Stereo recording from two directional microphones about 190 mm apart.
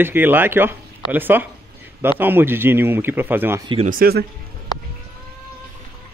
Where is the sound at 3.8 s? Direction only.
50° right (ahead or behind).